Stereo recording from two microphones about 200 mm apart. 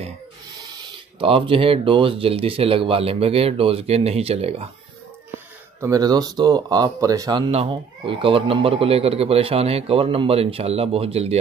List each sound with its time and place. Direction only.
1.2 s speech: 25° right (ahead or behind)
5.8 s speech: 15° right (ahead or behind)